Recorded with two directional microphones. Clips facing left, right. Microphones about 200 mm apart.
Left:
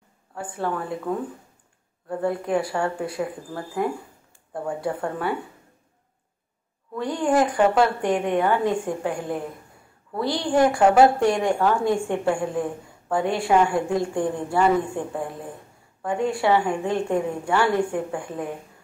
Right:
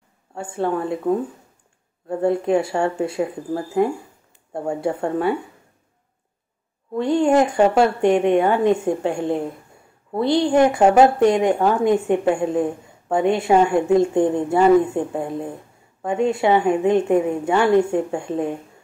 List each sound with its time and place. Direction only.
0.3 s a woman's voice: 25° right (ahead or behind)
6.9 s a woman's voice: 25° right (ahead or behind)